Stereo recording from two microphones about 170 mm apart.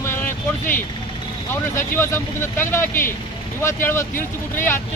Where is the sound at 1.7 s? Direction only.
15° left (ahead or behind).